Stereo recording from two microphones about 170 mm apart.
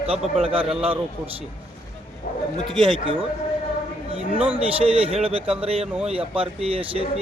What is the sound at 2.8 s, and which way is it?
Speech, 30° right (ahead or behind).